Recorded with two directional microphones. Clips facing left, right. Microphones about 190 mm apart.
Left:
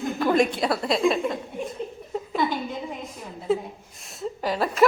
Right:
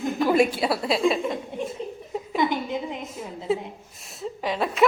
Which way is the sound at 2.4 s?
20° right (ahead or behind).